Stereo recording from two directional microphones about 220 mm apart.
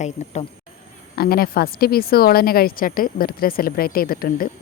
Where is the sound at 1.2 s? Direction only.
40° left (ahead or behind).